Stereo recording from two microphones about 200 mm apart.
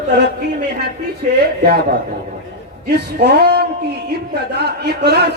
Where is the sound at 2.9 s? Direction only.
55° right (ahead or behind).